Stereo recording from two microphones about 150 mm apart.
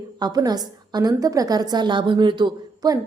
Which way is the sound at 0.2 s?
25° right (ahead or behind).